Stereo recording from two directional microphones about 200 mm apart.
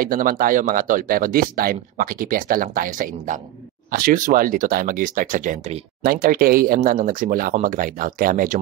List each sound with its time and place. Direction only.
0.0 s speech: 45° right (ahead or behind)